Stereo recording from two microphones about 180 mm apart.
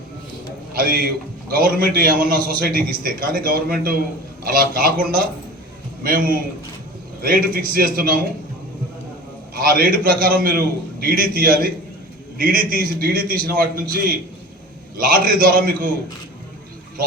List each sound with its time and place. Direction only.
0.7 s a man's voice: 55° right (ahead or behind)
9.6 s a man's voice: 55° right (ahead or behind)